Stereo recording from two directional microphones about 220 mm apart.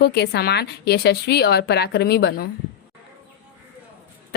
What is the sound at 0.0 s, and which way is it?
A woman's voice, 50° left (ahead or behind).